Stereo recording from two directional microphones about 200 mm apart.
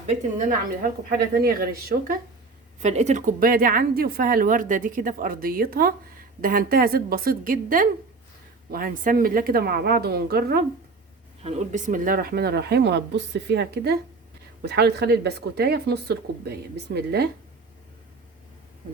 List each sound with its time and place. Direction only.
1.3 s a woman's voice: 45° right (ahead or behind)
2.8 s a woman's voice: 35° right (ahead or behind); by 10.6 s 50° right (ahead or behind)
11.4 s a woman's voice: 35° right (ahead or behind); by 17.2 s 55° right (ahead or behind)